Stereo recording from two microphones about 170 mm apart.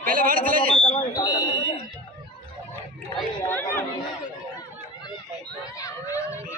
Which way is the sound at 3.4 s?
10° left (ahead or behind).